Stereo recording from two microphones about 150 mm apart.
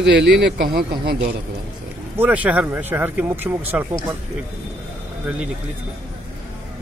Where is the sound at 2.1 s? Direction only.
10° right (ahead or behind).